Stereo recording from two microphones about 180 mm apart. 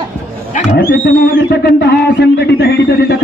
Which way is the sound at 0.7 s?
65° left (ahead or behind).